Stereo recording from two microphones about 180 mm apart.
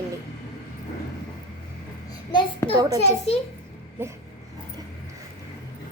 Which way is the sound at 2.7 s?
20° right (ahead or behind).